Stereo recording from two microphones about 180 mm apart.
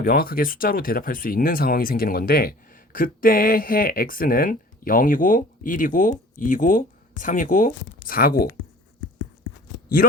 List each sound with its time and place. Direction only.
0.0 s speech: 55° left (ahead or behind)